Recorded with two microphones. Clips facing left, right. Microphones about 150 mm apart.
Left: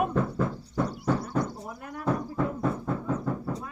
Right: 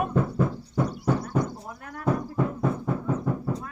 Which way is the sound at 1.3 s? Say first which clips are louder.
Right 2 dB; 15° right (ahead or behind).